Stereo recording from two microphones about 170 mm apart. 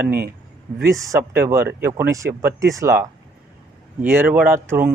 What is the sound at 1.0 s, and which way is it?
Speech, 15° right (ahead or behind).